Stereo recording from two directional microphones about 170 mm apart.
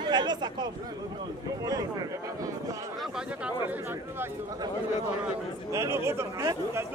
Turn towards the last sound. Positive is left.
turn(degrees=-15)  # may be behind; listen again after turning